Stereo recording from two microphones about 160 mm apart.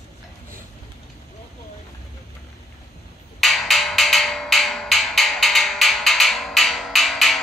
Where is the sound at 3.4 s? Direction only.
Centre (ahead or behind).